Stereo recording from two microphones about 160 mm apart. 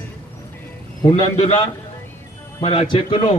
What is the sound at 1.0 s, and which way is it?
Speech, 25° left (ahead or behind).